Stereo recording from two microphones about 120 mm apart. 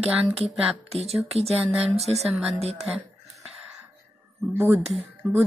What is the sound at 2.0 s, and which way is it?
Speech, 60° right (ahead or behind).